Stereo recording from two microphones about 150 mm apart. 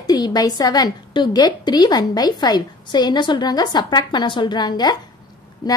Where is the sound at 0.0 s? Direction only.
25° left (ahead or behind).